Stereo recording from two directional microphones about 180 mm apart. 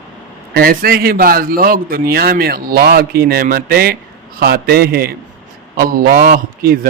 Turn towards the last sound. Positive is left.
turn(degrees=-55)  # may be behind; listen again after turning